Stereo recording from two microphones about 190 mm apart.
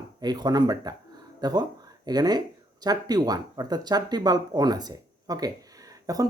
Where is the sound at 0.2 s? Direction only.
20° right (ahead or behind).